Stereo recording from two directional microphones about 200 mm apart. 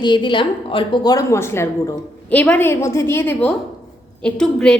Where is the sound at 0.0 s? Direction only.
25° left (ahead or behind).